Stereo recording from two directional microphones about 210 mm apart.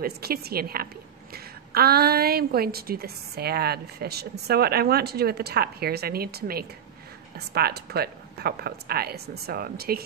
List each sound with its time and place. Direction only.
0.0 s a woman's voice: 45° right (ahead or behind)